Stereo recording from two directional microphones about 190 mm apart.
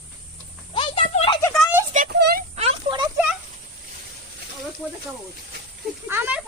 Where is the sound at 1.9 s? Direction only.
50° right (ahead or behind).